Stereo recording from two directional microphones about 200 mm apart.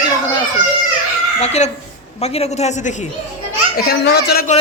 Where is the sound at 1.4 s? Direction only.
35° left (ahead or behind).